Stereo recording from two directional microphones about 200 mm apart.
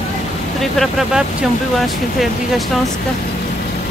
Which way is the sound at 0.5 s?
Centre (ahead or behind).